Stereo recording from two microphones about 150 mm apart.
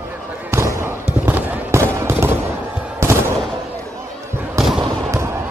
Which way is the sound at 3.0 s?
15° right (ahead or behind).